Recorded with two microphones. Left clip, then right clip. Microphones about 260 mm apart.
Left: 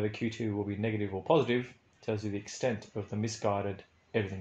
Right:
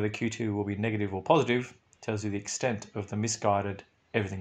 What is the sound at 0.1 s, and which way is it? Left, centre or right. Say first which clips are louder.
Speech: right 3 dB; right.